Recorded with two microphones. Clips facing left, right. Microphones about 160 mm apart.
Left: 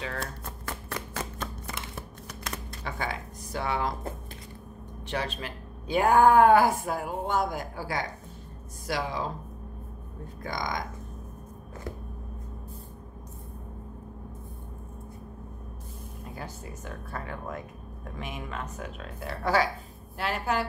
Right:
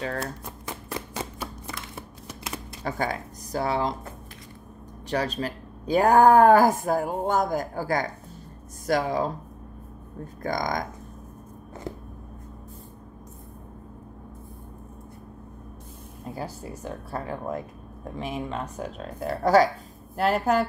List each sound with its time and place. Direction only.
0.7 s a sound: 15° right (ahead or behind)
2.8 s speech: 40° right (ahead or behind)
5.0 s a woman's voice: 40° right (ahead or behind)
10.4 s a woman's voice: 45° right (ahead or behind)
16.3 s speech: 35° right (ahead or behind)